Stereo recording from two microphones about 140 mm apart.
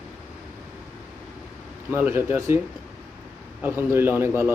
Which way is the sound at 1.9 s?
15° right (ahead or behind).